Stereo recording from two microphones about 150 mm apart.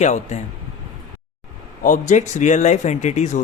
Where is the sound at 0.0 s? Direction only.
50° left (ahead or behind).